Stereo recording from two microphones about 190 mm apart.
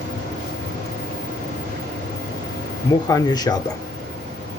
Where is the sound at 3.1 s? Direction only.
20° left (ahead or behind).